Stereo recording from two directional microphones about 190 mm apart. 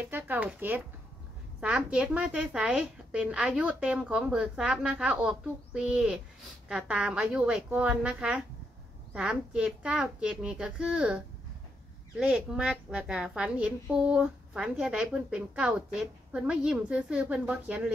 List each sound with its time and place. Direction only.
0.1 s a woman's voice: 10° right (ahead or behind)